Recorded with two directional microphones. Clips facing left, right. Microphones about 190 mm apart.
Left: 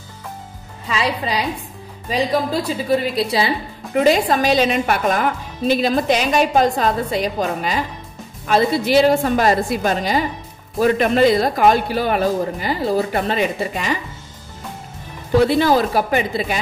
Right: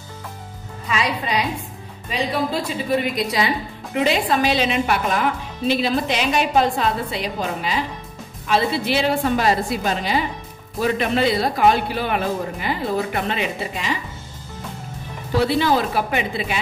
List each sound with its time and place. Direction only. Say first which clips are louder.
0.8 s a woman's voice: left 2 dB; 30° left (ahead or behind)
3.9 s a woman's voice: left 4 dB; 40° left (ahead or behind)
15.4 s speech: left 2 dB; 40° left (ahead or behind)